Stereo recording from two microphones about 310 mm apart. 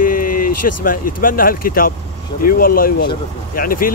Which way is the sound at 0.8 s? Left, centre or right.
Left.